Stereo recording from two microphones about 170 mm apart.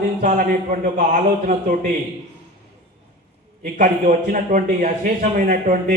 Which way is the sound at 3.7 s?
50° right (ahead or behind).